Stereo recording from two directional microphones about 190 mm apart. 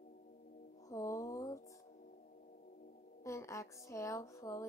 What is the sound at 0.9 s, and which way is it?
Music, 15° left (ahead or behind).